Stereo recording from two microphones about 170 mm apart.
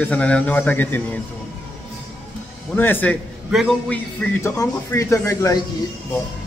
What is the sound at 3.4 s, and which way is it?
A man's voice, centre (ahead or behind).